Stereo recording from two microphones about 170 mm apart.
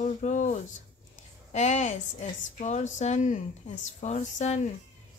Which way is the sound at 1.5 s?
45° left (ahead or behind).